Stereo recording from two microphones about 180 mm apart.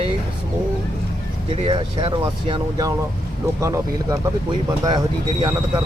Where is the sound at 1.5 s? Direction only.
30° right (ahead or behind).